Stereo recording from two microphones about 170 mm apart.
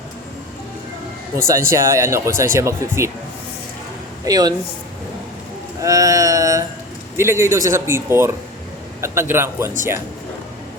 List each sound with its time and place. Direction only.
1.4 s speech: 15° right (ahead or behind)
4.3 s speech: 25° right (ahead or behind)
5.8 s a sound: 20° right (ahead or behind)
7.2 s speech: 15° right (ahead or behind)